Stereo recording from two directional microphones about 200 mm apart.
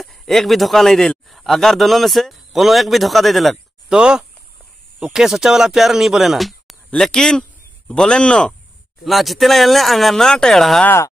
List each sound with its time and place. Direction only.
0.0 s speech: centre (ahead or behind)